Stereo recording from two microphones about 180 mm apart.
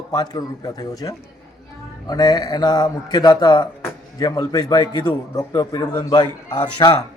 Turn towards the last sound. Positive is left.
turn(degrees=20)  # may be behind; listen again after turning